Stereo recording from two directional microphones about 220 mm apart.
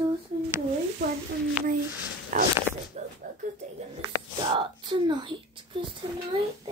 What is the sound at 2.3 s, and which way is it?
Speech, 35° right (ahead or behind).